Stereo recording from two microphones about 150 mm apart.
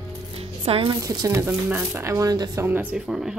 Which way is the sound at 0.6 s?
40° right (ahead or behind).